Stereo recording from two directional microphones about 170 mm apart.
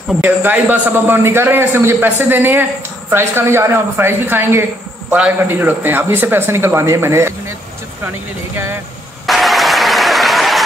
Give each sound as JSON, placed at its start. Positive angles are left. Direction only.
{"t": 0.1, "sound": "a man's voice", "side_deg": -10}
{"t": 9.2, "sound": "applause", "side_deg": 0}